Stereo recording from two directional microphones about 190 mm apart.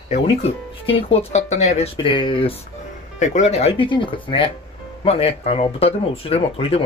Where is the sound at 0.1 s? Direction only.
30° left (ahead or behind).